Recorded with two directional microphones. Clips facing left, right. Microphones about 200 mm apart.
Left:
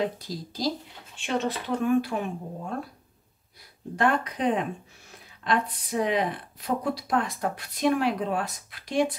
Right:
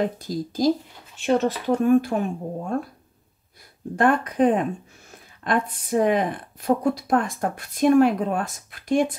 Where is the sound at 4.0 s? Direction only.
50° right (ahead or behind).